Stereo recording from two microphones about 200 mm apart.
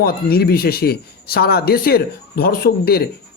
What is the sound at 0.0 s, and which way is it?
Speech, 50° left (ahead or behind).